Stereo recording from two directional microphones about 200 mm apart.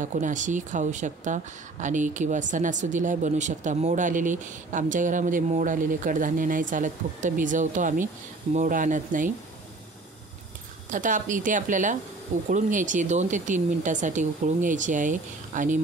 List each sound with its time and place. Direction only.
0.0 s speech: 40° right (ahead or behind)
10.9 s speech: 40° right (ahead or behind)